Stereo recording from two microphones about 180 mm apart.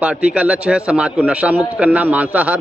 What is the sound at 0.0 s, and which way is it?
A man's voice, 10° right (ahead or behind).